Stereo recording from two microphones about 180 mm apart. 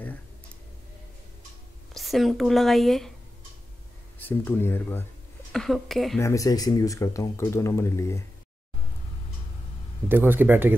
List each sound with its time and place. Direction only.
2.0 s speech: centre (ahead or behind)
4.2 s speech: 10° left (ahead or behind)
5.5 s speech: centre (ahead or behind)
6.1 s speech: 15° left (ahead or behind)
10.0 s speech: 10° right (ahead or behind)